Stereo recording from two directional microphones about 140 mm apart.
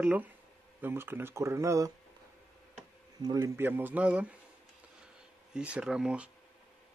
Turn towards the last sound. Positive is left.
turn(degrees=-5)  # may be behind; listen again after turning